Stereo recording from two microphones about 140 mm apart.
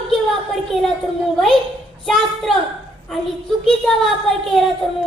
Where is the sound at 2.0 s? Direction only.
Centre (ahead or behind).